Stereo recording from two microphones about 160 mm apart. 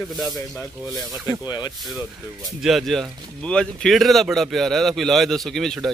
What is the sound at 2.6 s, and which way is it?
Speech, centre (ahead or behind).